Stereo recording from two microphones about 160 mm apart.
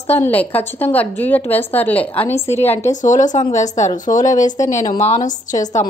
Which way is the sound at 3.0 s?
50° left (ahead or behind).